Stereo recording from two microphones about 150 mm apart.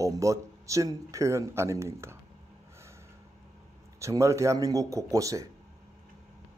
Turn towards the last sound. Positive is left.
turn(degrees=-20)  # may be behind; listen again after turning